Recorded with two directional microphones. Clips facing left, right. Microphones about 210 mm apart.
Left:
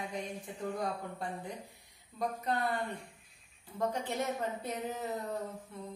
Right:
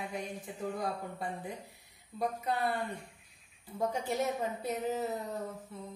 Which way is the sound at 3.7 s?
10° right (ahead or behind).